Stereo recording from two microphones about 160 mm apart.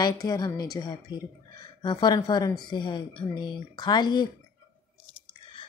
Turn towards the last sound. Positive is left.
turn(degrees=25)  # may be behind; listen again after turning